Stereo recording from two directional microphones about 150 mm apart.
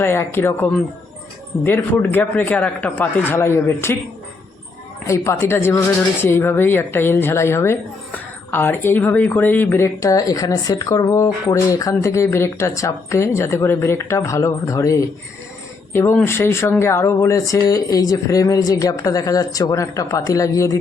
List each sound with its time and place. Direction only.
0.0 s speech: 15° left (ahead or behind)
5.0 s speech: 20° left (ahead or behind)